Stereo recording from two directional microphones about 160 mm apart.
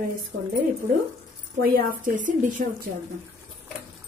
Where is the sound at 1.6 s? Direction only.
65° right (ahead or behind).